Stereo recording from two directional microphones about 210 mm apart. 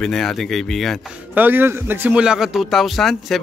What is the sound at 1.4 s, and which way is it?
A man's voice, 10° right (ahead or behind).